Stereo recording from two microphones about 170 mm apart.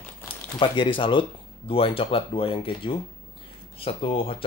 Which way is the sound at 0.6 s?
30° left (ahead or behind).